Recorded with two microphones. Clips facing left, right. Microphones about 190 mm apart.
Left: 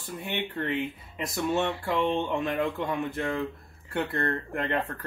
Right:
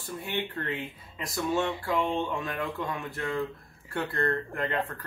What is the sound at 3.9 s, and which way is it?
Speech, 20° left (ahead or behind).